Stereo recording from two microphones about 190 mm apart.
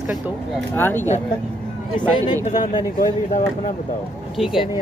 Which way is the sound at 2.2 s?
40° left (ahead or behind).